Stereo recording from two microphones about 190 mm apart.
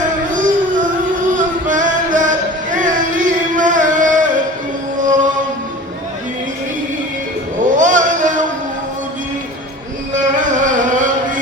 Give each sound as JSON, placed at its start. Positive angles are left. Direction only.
{"t": 1.3, "sound": "music", "side_deg": -45}
{"t": 7.6, "sound": "a sound", "side_deg": -40}
{"t": 10.6, "sound": "music", "side_deg": -40}